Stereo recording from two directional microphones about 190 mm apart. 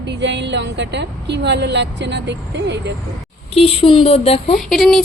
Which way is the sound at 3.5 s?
30° left (ahead or behind).